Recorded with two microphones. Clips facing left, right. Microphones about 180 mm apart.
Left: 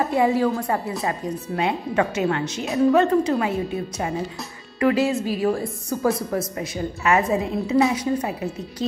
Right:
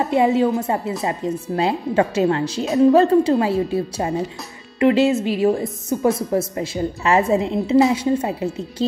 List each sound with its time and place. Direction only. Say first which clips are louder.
0.0 s a woman's voice: right 3 dB; 25° right (ahead or behind)